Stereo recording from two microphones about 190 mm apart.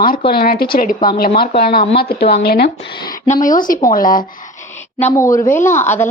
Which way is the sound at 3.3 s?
45° left (ahead or behind).